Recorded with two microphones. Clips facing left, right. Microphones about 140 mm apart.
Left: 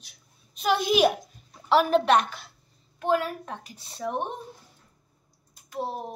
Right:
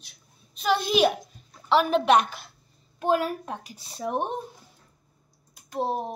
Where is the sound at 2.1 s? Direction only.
10° right (ahead or behind).